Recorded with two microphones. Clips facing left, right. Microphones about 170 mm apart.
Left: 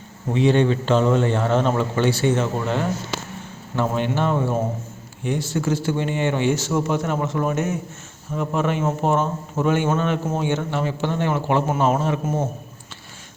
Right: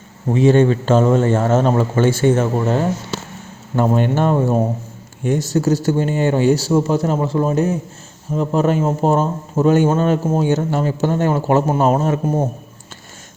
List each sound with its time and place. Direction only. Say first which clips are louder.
0.3 s a man's voice: right 5 dB; 45° right (ahead or behind)